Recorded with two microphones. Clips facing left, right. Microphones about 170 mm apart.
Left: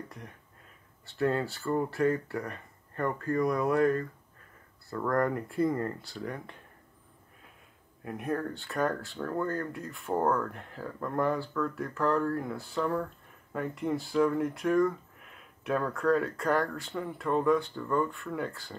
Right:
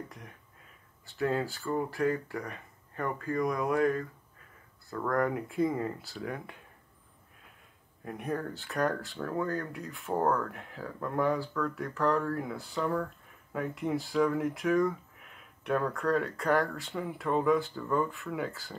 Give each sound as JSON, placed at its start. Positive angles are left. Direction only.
{"t": 1.0, "sound": "speech", "side_deg": 0}
{"t": 8.0, "sound": "speech", "side_deg": 0}